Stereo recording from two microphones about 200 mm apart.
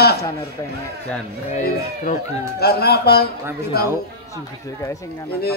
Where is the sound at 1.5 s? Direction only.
40° left (ahead or behind).